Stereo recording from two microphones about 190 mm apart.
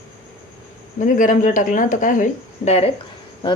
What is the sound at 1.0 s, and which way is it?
Speech, 45° left (ahead or behind).